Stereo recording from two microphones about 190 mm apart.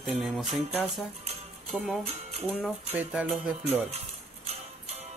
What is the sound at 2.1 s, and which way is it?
Speech, 35° right (ahead or behind).